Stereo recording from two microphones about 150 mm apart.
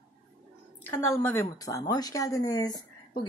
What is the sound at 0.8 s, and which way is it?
Speech, 15° left (ahead or behind).